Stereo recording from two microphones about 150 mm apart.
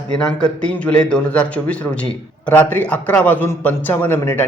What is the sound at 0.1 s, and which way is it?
Speech, 5° left (ahead or behind).